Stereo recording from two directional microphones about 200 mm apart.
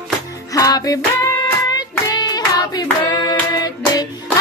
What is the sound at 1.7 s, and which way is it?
Hands, 20° left (ahead or behind).